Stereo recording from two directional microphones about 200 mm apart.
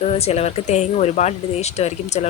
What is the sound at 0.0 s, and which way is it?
Speech, 30° left (ahead or behind).